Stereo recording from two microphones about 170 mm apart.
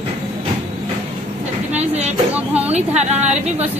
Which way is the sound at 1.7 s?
40° right (ahead or behind).